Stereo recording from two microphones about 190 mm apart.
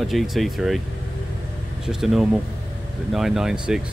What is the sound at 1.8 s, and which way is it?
Speech, centre (ahead or behind).